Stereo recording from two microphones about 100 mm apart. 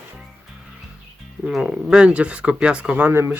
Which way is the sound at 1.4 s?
5° right (ahead or behind).